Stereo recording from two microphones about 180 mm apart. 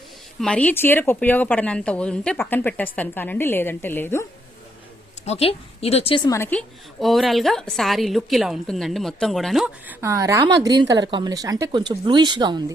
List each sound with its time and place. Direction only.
0.3 s a woman's voice: 5° left (ahead or behind)
5.2 s a woman's voice: 35° left (ahead or behind)
6.3 s a woman's voice: 10° left (ahead or behind); by 12.7 s 25° right (ahead or behind)